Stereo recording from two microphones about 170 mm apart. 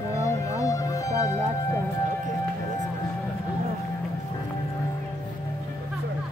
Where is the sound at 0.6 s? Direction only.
20° left (ahead or behind).